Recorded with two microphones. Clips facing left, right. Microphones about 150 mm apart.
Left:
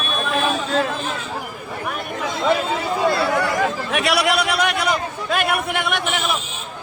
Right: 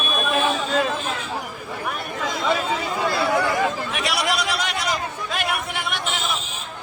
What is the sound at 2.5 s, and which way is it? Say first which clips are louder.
Chatter: left 4 dB; 25° left (ahead or behind).